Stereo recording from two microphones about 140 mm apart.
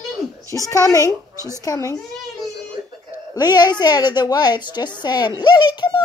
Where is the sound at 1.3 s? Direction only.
20° right (ahead or behind).